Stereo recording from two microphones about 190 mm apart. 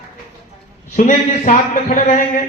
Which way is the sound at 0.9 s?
40° left (ahead or behind).